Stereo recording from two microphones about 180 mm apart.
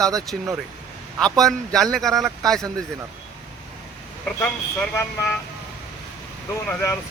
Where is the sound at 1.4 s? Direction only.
5° left (ahead or behind).